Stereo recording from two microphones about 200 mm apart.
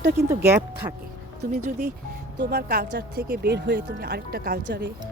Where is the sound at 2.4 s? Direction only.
55° right (ahead or behind).